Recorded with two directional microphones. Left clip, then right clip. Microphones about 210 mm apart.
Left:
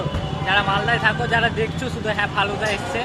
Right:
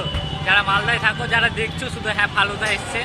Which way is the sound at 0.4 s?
15° left (ahead or behind).